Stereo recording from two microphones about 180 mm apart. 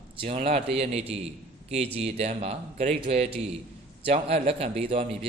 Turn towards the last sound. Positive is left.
turn(degrees=-30)  # may be behind; listen again after turning